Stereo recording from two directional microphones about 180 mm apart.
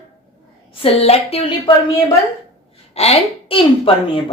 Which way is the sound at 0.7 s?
30° left (ahead or behind).